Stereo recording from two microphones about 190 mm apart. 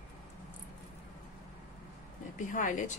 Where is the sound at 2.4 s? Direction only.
45° left (ahead or behind).